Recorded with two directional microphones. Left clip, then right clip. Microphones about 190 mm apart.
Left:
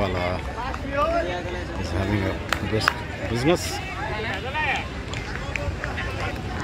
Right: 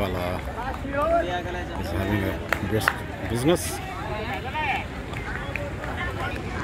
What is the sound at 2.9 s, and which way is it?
Speech, 40° right (ahead or behind).